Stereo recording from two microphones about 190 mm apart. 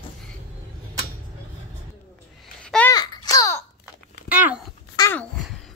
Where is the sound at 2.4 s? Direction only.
5° left (ahead or behind).